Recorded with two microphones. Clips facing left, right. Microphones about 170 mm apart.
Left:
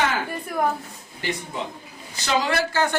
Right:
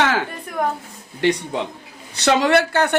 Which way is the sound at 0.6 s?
Centre (ahead or behind).